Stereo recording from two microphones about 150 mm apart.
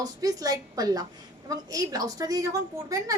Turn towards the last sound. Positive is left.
turn(degrees=-20)  # may be behind; listen again after turning